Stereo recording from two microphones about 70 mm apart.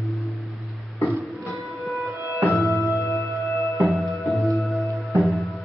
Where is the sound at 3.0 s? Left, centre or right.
Left.